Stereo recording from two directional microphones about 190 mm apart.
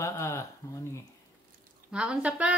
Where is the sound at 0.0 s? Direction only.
15° left (ahead or behind).